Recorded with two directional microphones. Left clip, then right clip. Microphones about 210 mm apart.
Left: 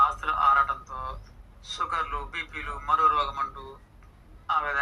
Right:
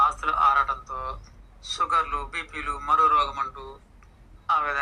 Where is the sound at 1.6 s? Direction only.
35° right (ahead or behind).